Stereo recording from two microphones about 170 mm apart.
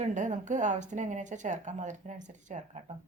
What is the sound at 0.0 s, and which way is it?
Speech, 45° right (ahead or behind).